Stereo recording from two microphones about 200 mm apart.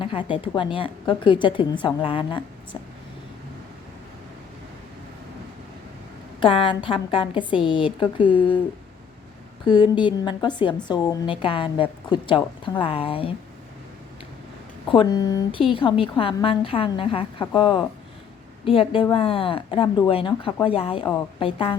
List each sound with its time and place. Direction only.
0.0 s a woman's voice: 25° left (ahead or behind)
6.4 s a woman's voice: 25° left (ahead or behind)
9.6 s a woman's voice: 20° left (ahead or behind)
14.8 s a woman's voice: 20° left (ahead or behind)